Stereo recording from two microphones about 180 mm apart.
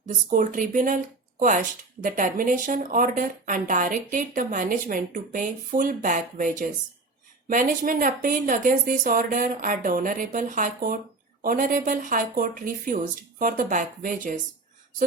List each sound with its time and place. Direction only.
0.0 s speech: 45° right (ahead or behind)